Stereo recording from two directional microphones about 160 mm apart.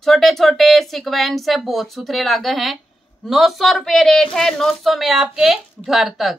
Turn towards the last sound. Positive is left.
turn(degrees=0)  # may be behind; listen again after turning